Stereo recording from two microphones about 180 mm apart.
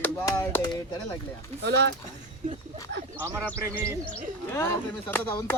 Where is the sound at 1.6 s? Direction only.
70° right (ahead or behind).